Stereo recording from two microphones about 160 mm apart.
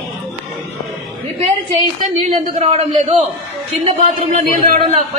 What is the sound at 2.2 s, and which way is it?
A man's voice, 45° right (ahead or behind).